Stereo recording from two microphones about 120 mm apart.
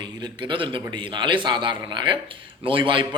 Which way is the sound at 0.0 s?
40° right (ahead or behind).